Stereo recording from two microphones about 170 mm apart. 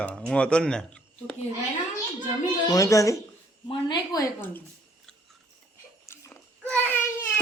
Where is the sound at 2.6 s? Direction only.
20° left (ahead or behind).